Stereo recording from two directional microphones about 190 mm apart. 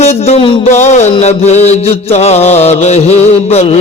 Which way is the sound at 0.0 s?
35° left (ahead or behind).